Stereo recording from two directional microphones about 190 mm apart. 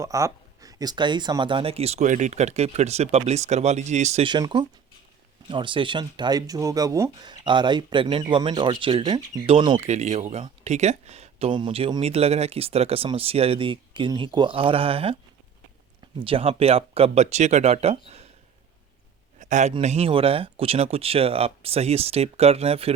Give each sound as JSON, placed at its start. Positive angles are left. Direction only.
{"t": 0.0, "sound": "speech", "side_deg": -15}
{"t": 4.3, "sound": "speech", "side_deg": -25}
{"t": 16.2, "sound": "speech", "side_deg": -30}
{"t": 19.4, "sound": "a sound", "side_deg": -40}
{"t": 19.7, "sound": "speech", "side_deg": -35}